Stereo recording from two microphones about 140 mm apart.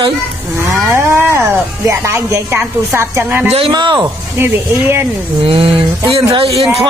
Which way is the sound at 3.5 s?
40° right (ahead or behind).